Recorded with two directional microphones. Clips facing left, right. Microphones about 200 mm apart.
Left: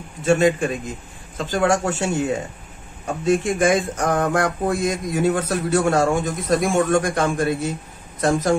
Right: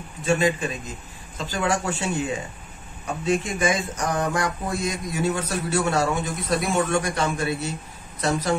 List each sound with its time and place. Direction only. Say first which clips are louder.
0.2 s speech: left 5 dB; 45° left (ahead or behind)